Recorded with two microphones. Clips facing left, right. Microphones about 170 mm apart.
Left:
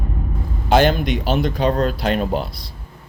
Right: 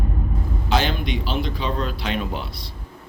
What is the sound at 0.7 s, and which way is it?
Speech, 50° left (ahead or behind).